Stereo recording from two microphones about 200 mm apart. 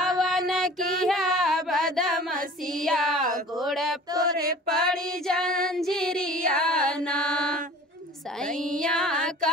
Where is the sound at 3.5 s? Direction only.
Centre (ahead or behind).